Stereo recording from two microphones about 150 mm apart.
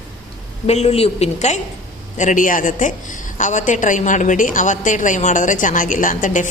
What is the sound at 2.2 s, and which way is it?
A woman's voice, 60° left (ahead or behind).